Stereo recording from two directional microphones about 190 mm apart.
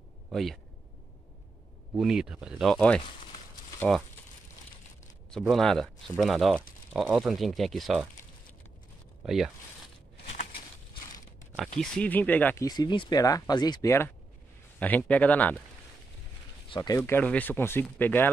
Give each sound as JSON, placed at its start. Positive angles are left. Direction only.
{"t": 0.3, "sound": "speech", "side_deg": 0}
{"t": 2.0, "sound": "speech", "side_deg": -5}
{"t": 5.5, "sound": "speech", "side_deg": 0}
{"t": 9.2, "sound": "speech", "side_deg": 0}
{"t": 10.3, "sound": "a sound", "side_deg": 50}
{"t": 11.8, "sound": "speech", "side_deg": 10}
{"t": 12.6, "sound": "speech", "side_deg": 20}
{"t": 16.6, "sound": "speech", "side_deg": 25}